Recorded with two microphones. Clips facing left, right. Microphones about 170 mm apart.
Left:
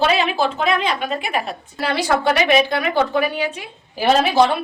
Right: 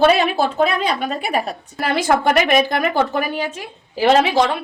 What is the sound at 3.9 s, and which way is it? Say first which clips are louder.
Speech: right 2 dB; 90° right.